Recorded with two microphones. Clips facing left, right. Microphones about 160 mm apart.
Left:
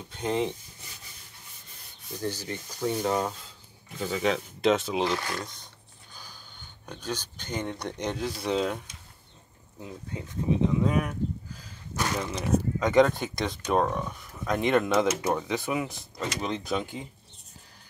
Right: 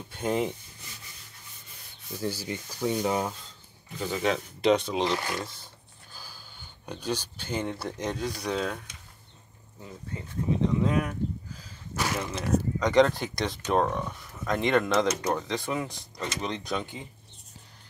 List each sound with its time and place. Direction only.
0.2 s speech: 5° right (ahead or behind)
2.2 s speech: 10° right (ahead or behind)
6.1 s snort: 5° right (ahead or behind)
6.9 s speech: 10° right (ahead or behind)
8.5 s speech: 20° left (ahead or behind)
10.8 s speech: 5° left (ahead or behind)
12.3 s speech: 10° left (ahead or behind)